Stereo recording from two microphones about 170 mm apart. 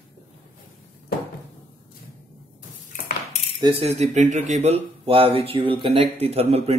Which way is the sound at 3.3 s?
40° left (ahead or behind).